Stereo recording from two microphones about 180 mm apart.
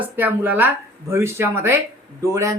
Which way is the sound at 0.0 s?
10° right (ahead or behind).